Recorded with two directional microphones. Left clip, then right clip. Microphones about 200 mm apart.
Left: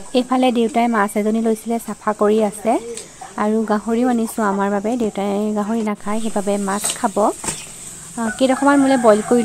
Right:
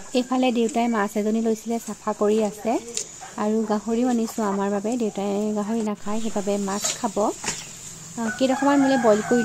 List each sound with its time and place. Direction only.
0.1 s speech: 20° left (ahead or behind)